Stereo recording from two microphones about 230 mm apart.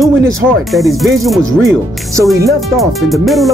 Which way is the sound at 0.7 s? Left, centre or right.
Centre.